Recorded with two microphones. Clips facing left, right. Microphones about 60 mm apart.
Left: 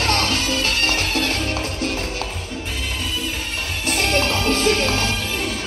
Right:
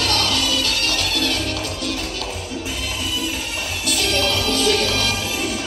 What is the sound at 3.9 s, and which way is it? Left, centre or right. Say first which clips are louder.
Music: left 1 dB; left.